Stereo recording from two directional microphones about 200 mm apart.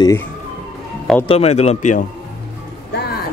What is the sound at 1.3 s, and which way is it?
Speech, 30° left (ahead or behind).